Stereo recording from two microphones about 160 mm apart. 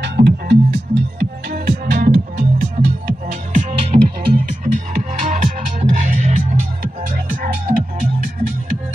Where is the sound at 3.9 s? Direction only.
30° right (ahead or behind).